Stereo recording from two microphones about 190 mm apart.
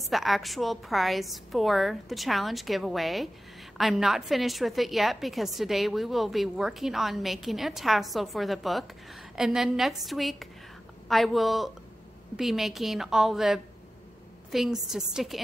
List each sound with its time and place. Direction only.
0.0 s a woman's voice: centre (ahead or behind)